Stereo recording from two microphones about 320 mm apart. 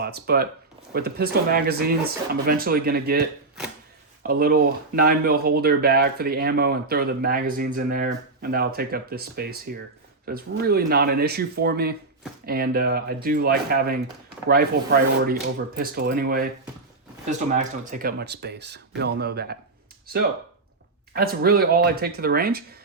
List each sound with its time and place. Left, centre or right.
0.0 s speech: right
17.6 s speech: right
21.2 s speech: right